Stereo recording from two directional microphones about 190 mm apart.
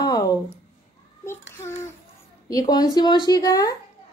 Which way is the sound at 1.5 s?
15° left (ahead or behind).